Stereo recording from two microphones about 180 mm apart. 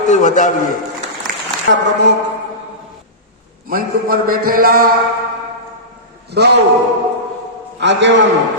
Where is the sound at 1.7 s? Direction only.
70° right (ahead or behind).